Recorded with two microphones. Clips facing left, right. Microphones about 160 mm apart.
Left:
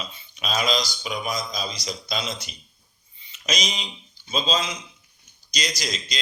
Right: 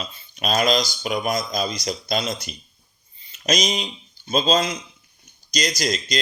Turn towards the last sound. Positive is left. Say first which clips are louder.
# right 6 dB
turn(degrees=-45)  # may be behind; listen again after turning